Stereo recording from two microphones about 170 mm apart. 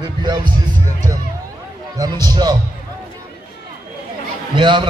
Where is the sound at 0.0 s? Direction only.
25° right (ahead or behind).